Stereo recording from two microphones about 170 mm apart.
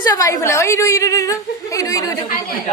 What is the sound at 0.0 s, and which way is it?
A woman's voice, 20° left (ahead or behind).